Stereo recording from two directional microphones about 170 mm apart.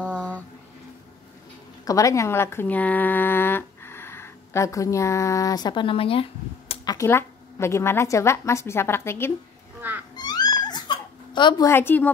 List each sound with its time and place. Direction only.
1.9 s speech: 20° left (ahead or behind)
6.8 s speech: 20° left (ahead or behind)
9.8 s a sound: 10° right (ahead or behind)
10.1 s cat: 25° left (ahead or behind)